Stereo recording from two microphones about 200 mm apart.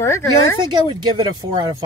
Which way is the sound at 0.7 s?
25° right (ahead or behind).